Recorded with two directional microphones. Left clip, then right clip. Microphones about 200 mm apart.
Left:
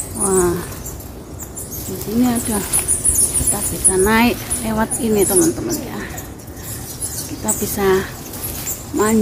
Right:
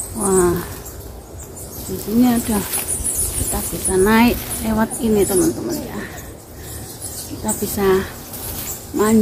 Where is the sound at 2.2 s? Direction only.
Centre (ahead or behind).